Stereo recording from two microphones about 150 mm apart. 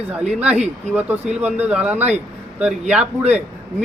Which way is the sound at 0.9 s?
10° right (ahead or behind).